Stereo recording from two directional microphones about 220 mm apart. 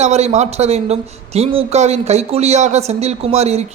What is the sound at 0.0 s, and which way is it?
Speech, 30° right (ahead or behind).